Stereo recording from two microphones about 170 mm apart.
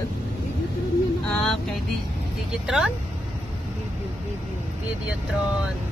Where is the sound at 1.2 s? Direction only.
5° left (ahead or behind).